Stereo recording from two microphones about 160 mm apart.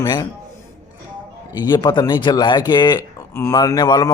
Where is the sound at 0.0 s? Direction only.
25° left (ahead or behind).